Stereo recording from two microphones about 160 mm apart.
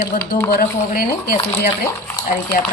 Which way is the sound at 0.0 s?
80° left.